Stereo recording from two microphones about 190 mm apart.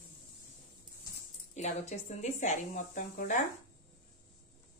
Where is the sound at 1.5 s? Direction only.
35° left (ahead or behind).